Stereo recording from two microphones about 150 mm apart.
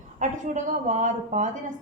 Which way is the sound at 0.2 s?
55° right (ahead or behind).